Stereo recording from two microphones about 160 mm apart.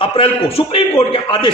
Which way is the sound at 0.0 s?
35° left (ahead or behind).